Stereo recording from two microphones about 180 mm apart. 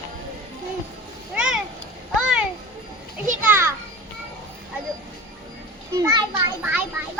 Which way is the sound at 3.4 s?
10° right (ahead or behind).